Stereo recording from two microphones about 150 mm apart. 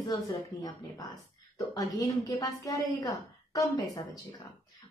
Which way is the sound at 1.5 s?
25° left (ahead or behind).